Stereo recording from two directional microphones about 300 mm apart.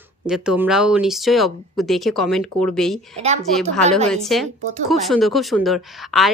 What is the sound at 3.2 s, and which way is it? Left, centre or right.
Speech, right.